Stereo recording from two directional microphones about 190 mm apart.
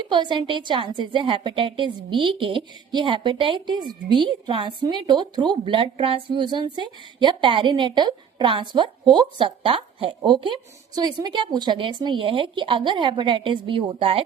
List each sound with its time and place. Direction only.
0.0 s a woman's voice: 25° right (ahead or behind)